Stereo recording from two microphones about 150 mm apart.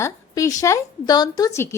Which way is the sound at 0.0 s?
20° left (ahead or behind).